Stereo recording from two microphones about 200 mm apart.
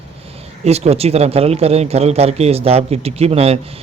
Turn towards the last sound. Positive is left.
turn(degrees=-30)  # may be behind; listen again after turning